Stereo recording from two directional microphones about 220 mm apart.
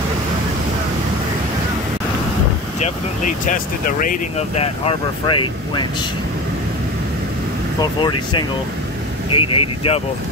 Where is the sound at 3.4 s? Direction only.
40° left (ahead or behind); by 5.8 s 20° left (ahead or behind).